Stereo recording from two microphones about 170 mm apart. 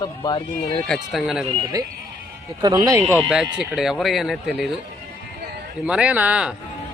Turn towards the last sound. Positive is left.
turn(degrees=-5)  # may be behind; listen again after turning